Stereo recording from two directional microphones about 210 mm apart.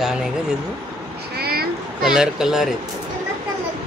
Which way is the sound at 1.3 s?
45° right (ahead or behind).